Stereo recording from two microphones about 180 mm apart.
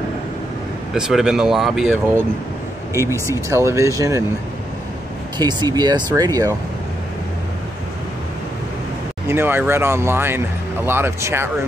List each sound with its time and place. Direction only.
0.9 s speech: 5° right (ahead or behind)
2.9 s speech: 15° right (ahead or behind)
5.4 s speech: 25° right (ahead or behind)
9.3 s speech: 10° right (ahead or behind)